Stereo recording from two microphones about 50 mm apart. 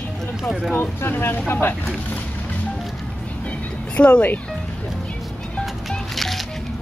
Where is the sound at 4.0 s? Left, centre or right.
Left.